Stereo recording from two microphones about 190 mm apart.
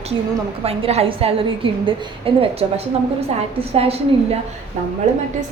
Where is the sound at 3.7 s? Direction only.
30° right (ahead or behind).